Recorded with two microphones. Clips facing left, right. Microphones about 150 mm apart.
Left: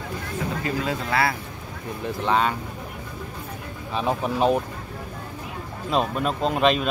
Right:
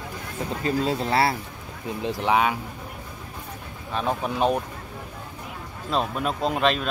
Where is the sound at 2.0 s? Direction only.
15° right (ahead or behind).